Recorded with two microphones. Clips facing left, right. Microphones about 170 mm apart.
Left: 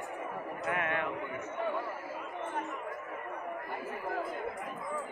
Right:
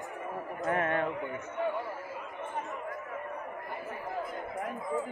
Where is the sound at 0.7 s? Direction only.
35° right (ahead or behind).